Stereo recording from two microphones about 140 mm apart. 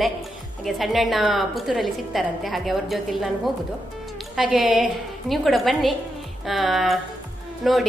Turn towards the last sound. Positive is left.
turn(degrees=0)  # may be behind; listen again after turning